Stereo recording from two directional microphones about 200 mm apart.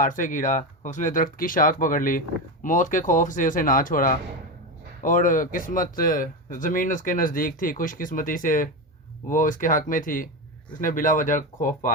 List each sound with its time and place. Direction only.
0.0 s speech: 40° left (ahead or behind)